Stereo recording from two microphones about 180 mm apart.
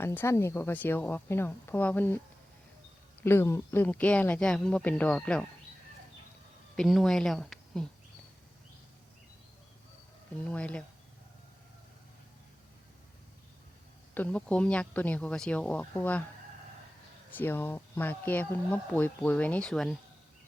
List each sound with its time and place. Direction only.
0.0 s speech: 10° left (ahead or behind)
3.2 s speech: 15° left (ahead or behind)
6.7 s a woman's voice: centre (ahead or behind)
10.4 s speech: 5° left (ahead or behind)
14.1 s speech: 10° left (ahead or behind)
17.3 s speech: 10° left (ahead or behind)